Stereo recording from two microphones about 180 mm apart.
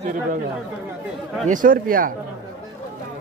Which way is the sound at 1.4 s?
50° right (ahead or behind).